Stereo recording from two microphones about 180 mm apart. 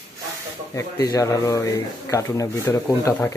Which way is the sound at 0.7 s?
15° left (ahead or behind).